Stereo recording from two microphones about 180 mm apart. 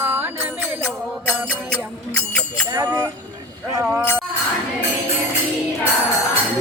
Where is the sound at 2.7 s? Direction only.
10° right (ahead or behind).